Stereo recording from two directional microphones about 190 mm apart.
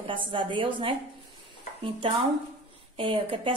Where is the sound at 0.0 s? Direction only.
25° right (ahead or behind).